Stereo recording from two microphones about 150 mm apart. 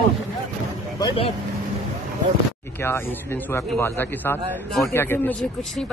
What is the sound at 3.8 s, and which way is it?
Speech, 15° left (ahead or behind).